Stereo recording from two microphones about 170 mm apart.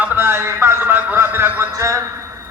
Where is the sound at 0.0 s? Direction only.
15° right (ahead or behind).